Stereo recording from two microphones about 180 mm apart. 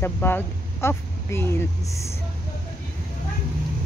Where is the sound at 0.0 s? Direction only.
10° left (ahead or behind).